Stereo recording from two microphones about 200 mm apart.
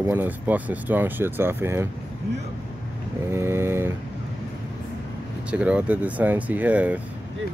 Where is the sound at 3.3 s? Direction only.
10° right (ahead or behind).